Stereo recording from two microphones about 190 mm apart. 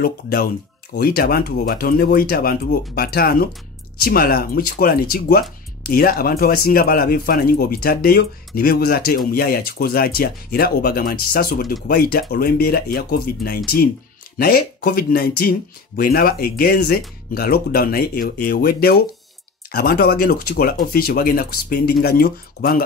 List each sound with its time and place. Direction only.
0.0 s speech: 55° left (ahead or behind)